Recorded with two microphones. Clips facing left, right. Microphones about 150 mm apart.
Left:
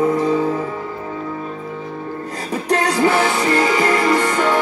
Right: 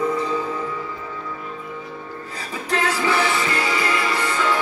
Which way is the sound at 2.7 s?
45° left (ahead or behind).